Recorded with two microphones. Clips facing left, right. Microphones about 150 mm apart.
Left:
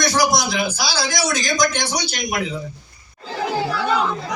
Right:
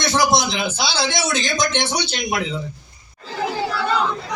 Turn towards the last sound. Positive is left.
turn(degrees=-25)  # may be behind; listen again after turning